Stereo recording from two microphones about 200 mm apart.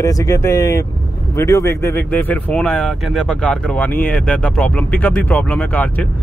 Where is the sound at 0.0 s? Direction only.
15° left (ahead or behind).